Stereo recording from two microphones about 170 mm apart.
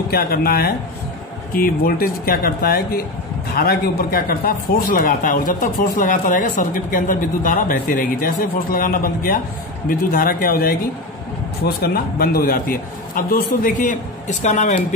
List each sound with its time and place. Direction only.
0.1 s speech: 60° left (ahead or behind); by 15.0 s 45° left (ahead or behind)